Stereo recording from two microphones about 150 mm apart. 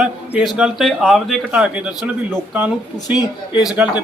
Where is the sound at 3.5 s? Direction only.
25° left (ahead or behind).